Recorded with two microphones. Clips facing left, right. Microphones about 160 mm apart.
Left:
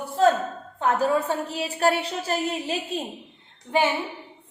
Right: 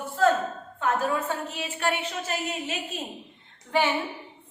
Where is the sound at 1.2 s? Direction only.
35° left (ahead or behind).